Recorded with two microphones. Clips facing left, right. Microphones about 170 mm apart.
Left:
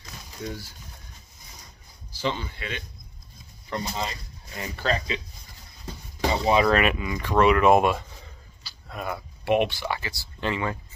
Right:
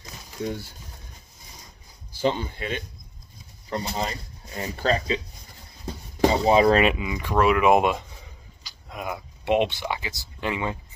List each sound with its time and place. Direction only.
2.2 s speech: 45° right (ahead or behind)
3.7 s speech: 30° right (ahead or behind)
6.3 s speech: 30° right (ahead or behind)
7.0 s speech: 10° right (ahead or behind)
7.7 s speech: 15° right (ahead or behind)